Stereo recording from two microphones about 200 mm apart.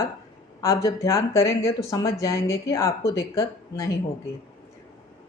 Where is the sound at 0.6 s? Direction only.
15° left (ahead or behind).